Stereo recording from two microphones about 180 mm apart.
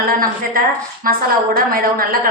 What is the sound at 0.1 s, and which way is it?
A woman's voice, 55° right (ahead or behind).